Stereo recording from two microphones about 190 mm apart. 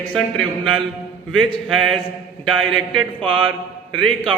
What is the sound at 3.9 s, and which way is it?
Speech, 5° left (ahead or behind).